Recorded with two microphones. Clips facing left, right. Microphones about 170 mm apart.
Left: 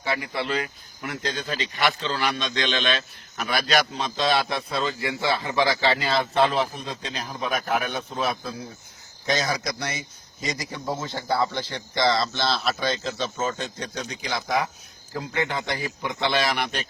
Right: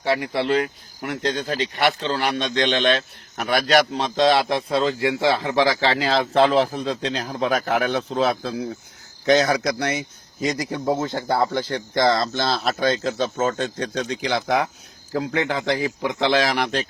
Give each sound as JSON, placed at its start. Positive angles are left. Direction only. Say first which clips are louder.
{"t": 0.2, "sound": "speech", "louder": "right 6 dB", "side_deg": -65}
{"t": 9.2, "sound": "speech", "louder": "right 8 dB", "side_deg": -65}
{"t": 15.3, "sound": "a man's voice", "louder": "right 4 dB", "side_deg": -90}